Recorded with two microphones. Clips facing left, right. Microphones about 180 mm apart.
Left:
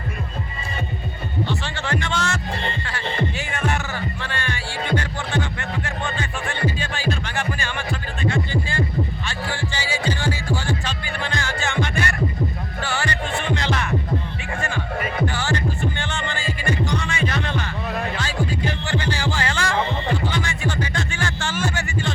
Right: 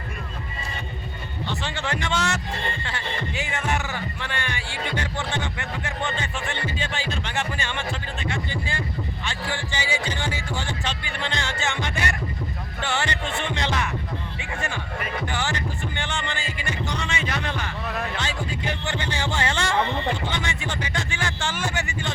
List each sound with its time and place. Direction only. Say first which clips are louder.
1.6 s music: left 2 dB; 15° right (ahead or behind)
2.8 s heart sounds: left 5 dB; 20° right (ahead or behind)
4.9 s music: left 2 dB; 20° right (ahead or behind)
15.3 s music: left 4 dB; 15° right (ahead or behind)